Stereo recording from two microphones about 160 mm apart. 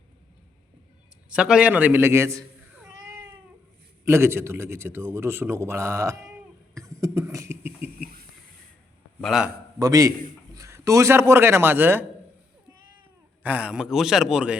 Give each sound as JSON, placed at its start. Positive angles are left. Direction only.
{"t": 1.3, "sound": "a man's voice", "side_deg": -5}
{"t": 4.0, "sound": "a man's voice", "side_deg": -15}
{"t": 6.7, "sound": "cough", "side_deg": -20}
{"t": 7.9, "sound": "a sound", "side_deg": -70}
{"t": 9.2, "sound": "a man's voice", "side_deg": 0}
{"t": 9.7, "sound": "a man's voice", "side_deg": -20}
{"t": 13.4, "sound": "a man's voice", "side_deg": -10}